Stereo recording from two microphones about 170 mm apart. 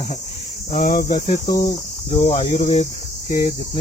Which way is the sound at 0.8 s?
60° left (ahead or behind).